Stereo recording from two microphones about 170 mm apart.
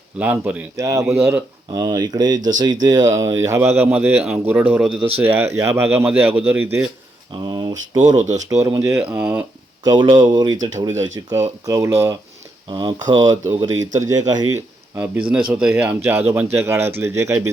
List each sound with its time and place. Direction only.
0.2 s speech: 10° right (ahead or behind)
7.4 s speech: 25° right (ahead or behind)
8.1 s speech: 45° right (ahead or behind)
8.4 s speech: 20° right (ahead or behind)
9.8 s speech: 25° right (ahead or behind)
12.6 s speech: 25° right (ahead or behind)
14.9 s speech: 10° right (ahead or behind)